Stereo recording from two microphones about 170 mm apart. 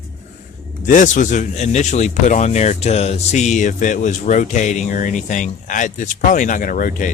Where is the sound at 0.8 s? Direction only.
50° left (ahead or behind).